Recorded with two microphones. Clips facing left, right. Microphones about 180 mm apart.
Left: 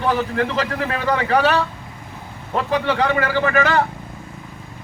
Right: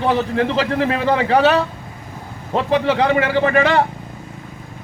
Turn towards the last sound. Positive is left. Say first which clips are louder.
# right 3 dB
turn(degrees=-25)  # may be behind; listen again after turning